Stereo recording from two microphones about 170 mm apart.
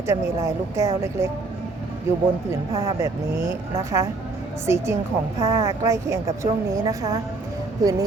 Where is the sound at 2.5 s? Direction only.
15° right (ahead or behind).